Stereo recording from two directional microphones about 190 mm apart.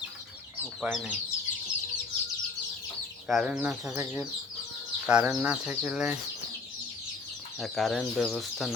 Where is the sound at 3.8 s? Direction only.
15° right (ahead or behind).